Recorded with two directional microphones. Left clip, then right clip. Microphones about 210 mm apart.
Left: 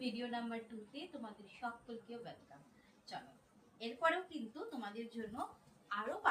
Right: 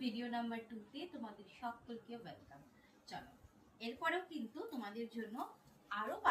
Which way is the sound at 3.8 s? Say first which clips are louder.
Left 3 dB; 15° left (ahead or behind).